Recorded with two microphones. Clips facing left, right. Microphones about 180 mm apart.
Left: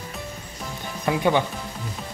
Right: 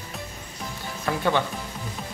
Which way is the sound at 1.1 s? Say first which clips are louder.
Left 3 dB; 15° left (ahead or behind).